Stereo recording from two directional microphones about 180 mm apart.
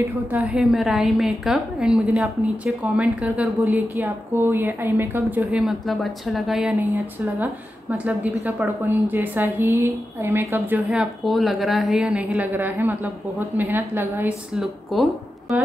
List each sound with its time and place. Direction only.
0.3 s a woman's voice: 5° right (ahead or behind)
8.0 s a woman's voice: 10° right (ahead or behind)